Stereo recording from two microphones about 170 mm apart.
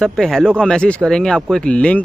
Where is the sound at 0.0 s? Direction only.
Centre (ahead or behind).